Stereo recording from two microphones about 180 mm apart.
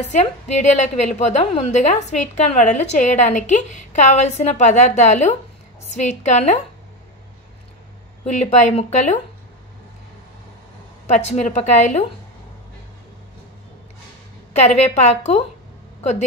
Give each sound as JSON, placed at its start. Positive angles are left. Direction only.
{"t": 0.1, "sound": "a woman's voice", "side_deg": 40}
{"t": 8.2, "sound": "a woman's voice", "side_deg": 40}
{"t": 11.1, "sound": "a woman's voice", "side_deg": 40}
{"t": 14.5, "sound": "a woman's voice", "side_deg": 40}